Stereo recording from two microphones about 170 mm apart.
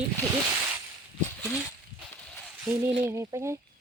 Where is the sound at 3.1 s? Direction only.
15° right (ahead or behind).